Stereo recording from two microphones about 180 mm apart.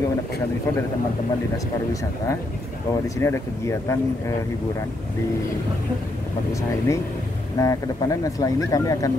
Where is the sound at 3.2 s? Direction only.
15° left (ahead or behind).